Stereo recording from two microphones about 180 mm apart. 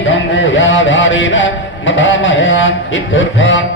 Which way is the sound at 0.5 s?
90° left.